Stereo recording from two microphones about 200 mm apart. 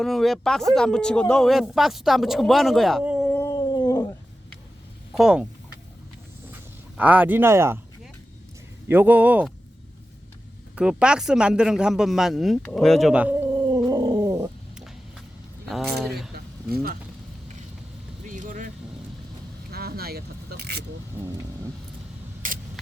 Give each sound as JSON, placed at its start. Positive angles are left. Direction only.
{"t": 0.0, "sound": "speech", "side_deg": 0}
{"t": 3.3, "sound": "howl", "side_deg": 15}
{"t": 5.1, "sound": "speech", "side_deg": -5}
{"t": 6.9, "sound": "speech", "side_deg": -5}
{"t": 8.9, "sound": "speech", "side_deg": -10}
{"t": 10.8, "sound": "a man's voice", "side_deg": -5}
{"t": 15.6, "sound": "a sound", "side_deg": 0}
{"t": 16.7, "sound": "speech", "side_deg": -45}
{"t": 18.3, "sound": "vehicle", "side_deg": -40}
{"t": 19.7, "sound": "single-lens reflex camera", "side_deg": -50}
{"t": 22.4, "sound": "a sound", "side_deg": -45}